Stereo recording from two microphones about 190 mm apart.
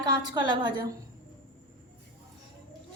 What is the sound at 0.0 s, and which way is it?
Speech, 25° right (ahead or behind).